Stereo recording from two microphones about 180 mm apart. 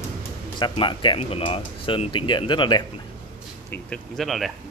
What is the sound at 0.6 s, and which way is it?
Speech, 25° left (ahead or behind).